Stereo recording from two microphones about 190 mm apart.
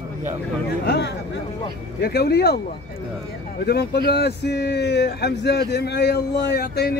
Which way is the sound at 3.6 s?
55° left (ahead or behind).